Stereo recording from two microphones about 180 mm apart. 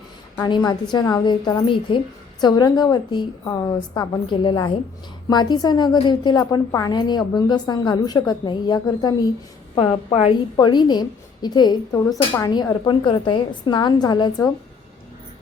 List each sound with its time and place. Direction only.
0.3 s a woman's voice: 25° left (ahead or behind)
9.7 s a woman's voice: 30° left (ahead or behind)